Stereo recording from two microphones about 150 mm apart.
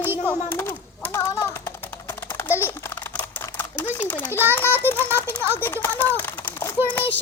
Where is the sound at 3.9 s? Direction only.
10° left (ahead or behind).